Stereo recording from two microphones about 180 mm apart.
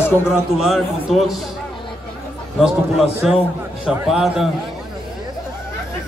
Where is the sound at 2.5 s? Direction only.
Centre (ahead or behind).